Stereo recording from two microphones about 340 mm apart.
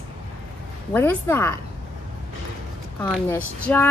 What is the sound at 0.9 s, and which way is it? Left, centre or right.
Speech, centre.